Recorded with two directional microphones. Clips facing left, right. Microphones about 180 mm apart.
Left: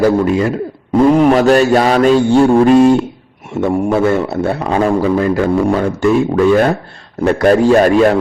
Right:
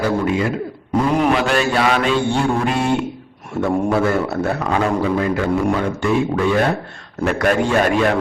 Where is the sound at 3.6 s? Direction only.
25° left (ahead or behind).